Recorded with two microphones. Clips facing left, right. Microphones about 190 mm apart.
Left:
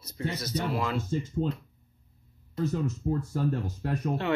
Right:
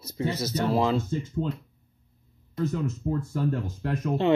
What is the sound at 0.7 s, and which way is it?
Speech, 30° right (ahead or behind).